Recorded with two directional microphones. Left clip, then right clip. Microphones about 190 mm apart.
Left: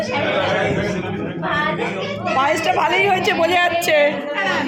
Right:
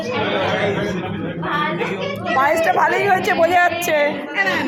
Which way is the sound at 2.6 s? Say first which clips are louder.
Right 1 dB; 5° left (ahead or behind).